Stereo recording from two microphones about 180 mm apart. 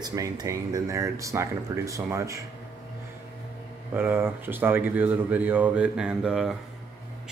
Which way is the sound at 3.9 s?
10° right (ahead or behind).